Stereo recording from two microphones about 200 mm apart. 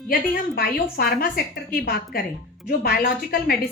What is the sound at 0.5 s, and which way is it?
A woman's voice, 50° left (ahead or behind).